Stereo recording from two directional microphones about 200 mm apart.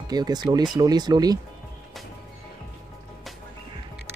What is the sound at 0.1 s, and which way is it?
Speech, 20° right (ahead or behind).